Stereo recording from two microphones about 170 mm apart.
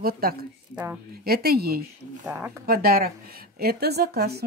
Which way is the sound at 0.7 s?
10° right (ahead or behind).